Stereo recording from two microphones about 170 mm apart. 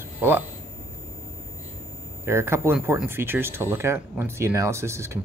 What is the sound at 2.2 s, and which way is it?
Speech, 15° right (ahead or behind).